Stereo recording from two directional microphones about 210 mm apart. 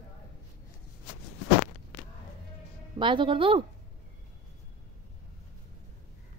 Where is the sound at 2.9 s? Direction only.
25° right (ahead or behind).